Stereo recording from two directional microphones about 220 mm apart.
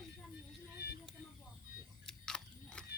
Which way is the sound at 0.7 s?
50° left (ahead or behind).